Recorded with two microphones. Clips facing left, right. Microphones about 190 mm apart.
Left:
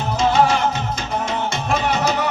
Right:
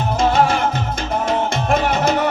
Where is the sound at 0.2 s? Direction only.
55° right (ahead or behind).